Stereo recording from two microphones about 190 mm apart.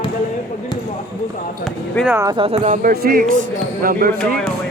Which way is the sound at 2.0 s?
15° right (ahead or behind).